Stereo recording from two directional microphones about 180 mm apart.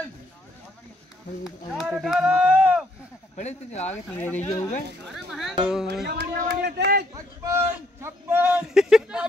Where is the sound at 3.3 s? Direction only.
40° left (ahead or behind).